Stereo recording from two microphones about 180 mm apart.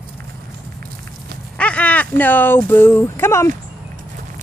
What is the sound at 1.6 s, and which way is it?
Speech, 5° left (ahead or behind).